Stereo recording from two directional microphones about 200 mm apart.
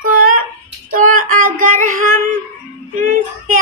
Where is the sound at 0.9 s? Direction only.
45° right (ahead or behind).